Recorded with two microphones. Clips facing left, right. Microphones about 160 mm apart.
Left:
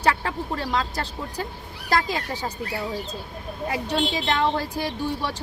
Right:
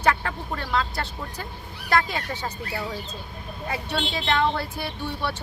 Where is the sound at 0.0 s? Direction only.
35° left (ahead or behind).